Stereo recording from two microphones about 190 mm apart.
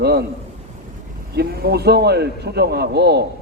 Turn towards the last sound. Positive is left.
turn(degrees=-60)  # may be behind; listen again after turning